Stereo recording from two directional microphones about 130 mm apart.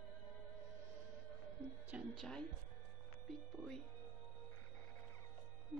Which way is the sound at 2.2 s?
5° left (ahead or behind).